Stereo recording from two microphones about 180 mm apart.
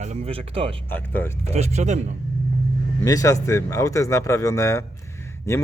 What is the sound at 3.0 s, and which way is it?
A man's voice, 20° left (ahead or behind).